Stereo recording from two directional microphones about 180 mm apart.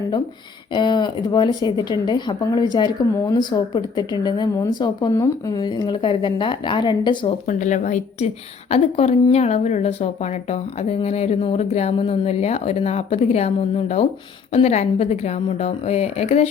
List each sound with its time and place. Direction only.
0.7 s a woman's voice: 25° left (ahead or behind)
7.4 s a woman's voice: 45° left (ahead or behind)